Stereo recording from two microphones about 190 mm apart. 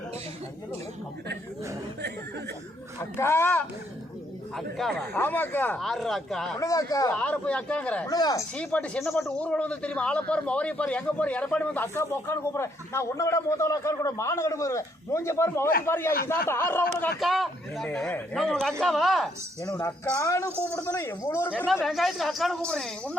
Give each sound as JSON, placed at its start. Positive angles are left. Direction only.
{"t": 3.0, "sound": "a man's voice", "side_deg": 10}
{"t": 6.6, "sound": "a man's voice", "side_deg": 15}
{"t": 7.1, "sound": "a man's voice", "side_deg": 5}
{"t": 8.0, "sound": "speech", "side_deg": 20}
{"t": 8.5, "sound": "a man's voice", "side_deg": 5}
{"t": 17.2, "sound": "speech", "side_deg": 0}
{"t": 19.7, "sound": "a man's voice", "side_deg": 10}